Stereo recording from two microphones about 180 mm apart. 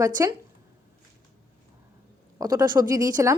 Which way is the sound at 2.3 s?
20° right (ahead or behind).